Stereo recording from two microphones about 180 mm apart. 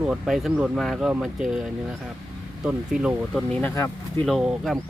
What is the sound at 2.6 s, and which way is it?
Speech, 5° right (ahead or behind).